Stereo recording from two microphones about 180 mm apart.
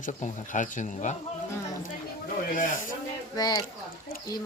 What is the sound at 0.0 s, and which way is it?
Speech, 45° left (ahead or behind).